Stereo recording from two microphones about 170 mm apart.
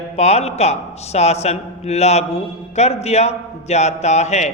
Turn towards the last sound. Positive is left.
turn(degrees=40)  # may be behind; listen again after turning